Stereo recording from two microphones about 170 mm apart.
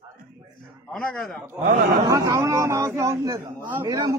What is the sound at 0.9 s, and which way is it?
Speech, centre (ahead or behind).